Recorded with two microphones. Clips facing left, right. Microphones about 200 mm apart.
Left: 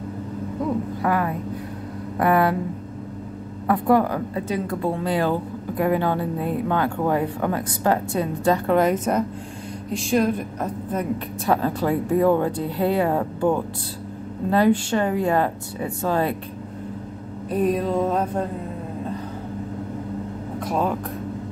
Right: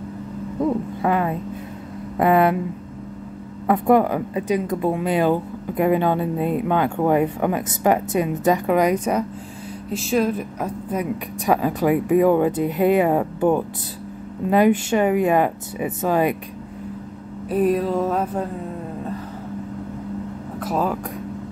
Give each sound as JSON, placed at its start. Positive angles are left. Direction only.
{"t": 1.0, "sound": "speech", "side_deg": -20}
{"t": 3.6, "sound": "a woman's voice", "side_deg": -20}
{"t": 17.5, "sound": "a woman's voice", "side_deg": -5}
{"t": 18.1, "sound": "music", "side_deg": -5}
{"t": 20.5, "sound": "speech", "side_deg": -5}